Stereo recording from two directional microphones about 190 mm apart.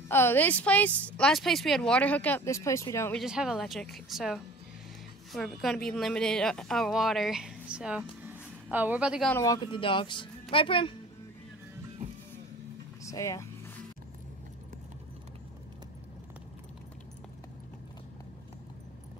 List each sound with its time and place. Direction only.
0.1 s a woman's voice: 10° left (ahead or behind)
3.2 s a woman's voice: 5° right (ahead or behind)
9.3 s a woman's voice: 15° left (ahead or behind)
13.0 s speech: 15° left (ahead or behind)